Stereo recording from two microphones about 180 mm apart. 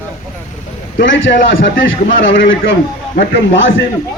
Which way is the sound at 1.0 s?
90° left.